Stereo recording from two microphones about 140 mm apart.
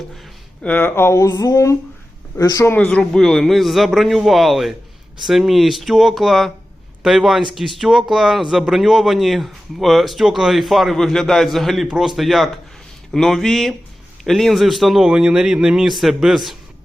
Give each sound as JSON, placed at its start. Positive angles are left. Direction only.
{"t": 0.6, "sound": "speech", "side_deg": 10}
{"t": 2.7, "sound": "speech", "side_deg": 5}